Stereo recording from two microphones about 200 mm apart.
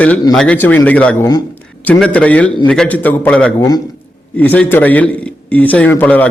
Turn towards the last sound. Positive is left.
turn(degrees=10)  # may be behind; listen again after turning